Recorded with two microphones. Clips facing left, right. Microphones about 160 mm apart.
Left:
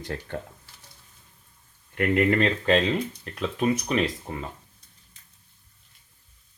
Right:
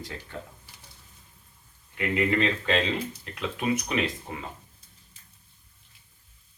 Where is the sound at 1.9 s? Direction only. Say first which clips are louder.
Left 4 dB; 55° left (ahead or behind); by 4.0 s 35° left (ahead or behind).